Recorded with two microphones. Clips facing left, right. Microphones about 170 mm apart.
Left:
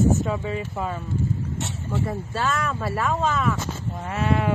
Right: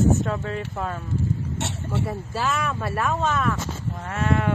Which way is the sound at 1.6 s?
80° right.